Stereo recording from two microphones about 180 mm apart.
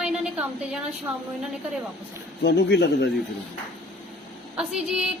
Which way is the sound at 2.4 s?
70° left (ahead or behind).